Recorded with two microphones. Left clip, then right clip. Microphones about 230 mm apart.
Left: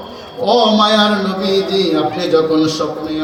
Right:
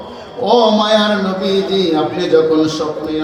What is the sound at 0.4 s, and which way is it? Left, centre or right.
A man's voice, left.